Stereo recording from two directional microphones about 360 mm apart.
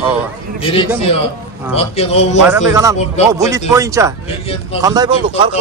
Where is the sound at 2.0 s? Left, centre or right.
Centre.